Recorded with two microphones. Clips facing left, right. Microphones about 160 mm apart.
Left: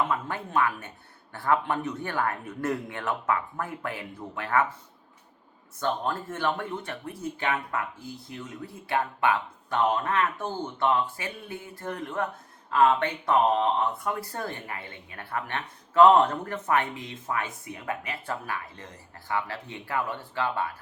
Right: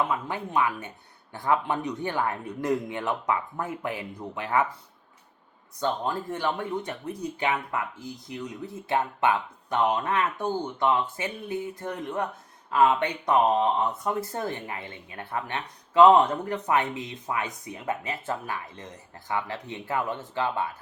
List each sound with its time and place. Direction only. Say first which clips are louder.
0.1 s a man's voice: even; 15° right (ahead or behind)
5.8 s speech: right 1 dB; 15° right (ahead or behind)